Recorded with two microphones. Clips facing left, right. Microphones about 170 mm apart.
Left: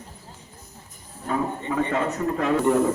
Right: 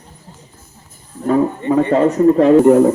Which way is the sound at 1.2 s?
45° right (ahead or behind).